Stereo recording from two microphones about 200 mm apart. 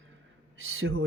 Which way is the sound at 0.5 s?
90° right.